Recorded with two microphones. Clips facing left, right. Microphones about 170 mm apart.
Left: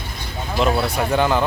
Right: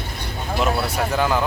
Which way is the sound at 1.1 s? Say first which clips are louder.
Left 3 dB; centre (ahead or behind).